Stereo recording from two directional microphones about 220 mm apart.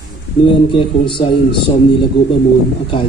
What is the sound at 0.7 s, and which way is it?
Speech, 25° left (ahead or behind).